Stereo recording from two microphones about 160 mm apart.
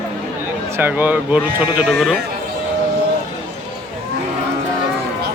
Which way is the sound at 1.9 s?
Centre (ahead or behind).